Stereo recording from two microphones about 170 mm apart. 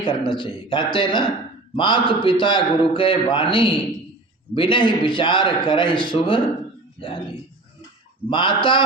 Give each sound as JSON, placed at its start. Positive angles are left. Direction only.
{"t": 0.0, "sound": "a man's voice", "side_deg": 30}
{"t": 8.3, "sound": "a man's voice", "side_deg": 30}